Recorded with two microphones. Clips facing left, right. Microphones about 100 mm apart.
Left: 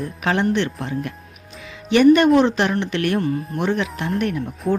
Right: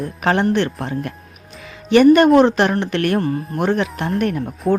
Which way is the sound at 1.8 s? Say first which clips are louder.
Right 2 dB; 45° right (ahead or behind).